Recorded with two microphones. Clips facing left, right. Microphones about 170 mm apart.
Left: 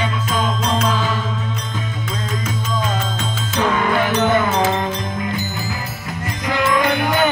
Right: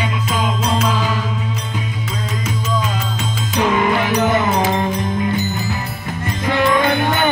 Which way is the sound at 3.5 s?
15° right (ahead or behind).